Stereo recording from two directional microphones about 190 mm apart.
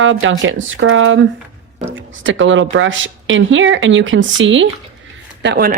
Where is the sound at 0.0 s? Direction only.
90° right.